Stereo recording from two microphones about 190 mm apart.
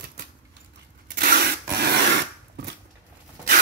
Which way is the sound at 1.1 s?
50° right (ahead or behind).